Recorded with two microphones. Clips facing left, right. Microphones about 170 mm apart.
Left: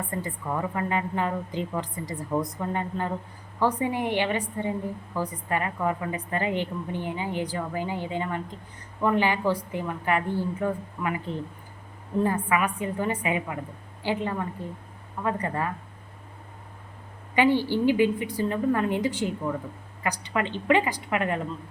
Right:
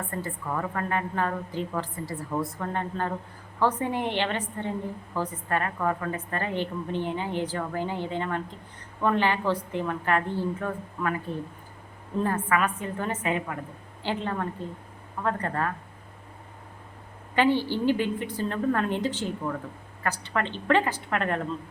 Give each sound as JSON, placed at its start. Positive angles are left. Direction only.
{"t": 0.1, "sound": "a woman's voice", "side_deg": 15}
{"t": 12.2, "sound": "a woman's voice", "side_deg": 15}
{"t": 17.3, "sound": "a woman's voice", "side_deg": 15}